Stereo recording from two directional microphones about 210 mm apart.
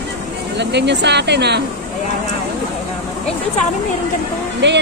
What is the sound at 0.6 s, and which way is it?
Speech, 55° right (ahead or behind).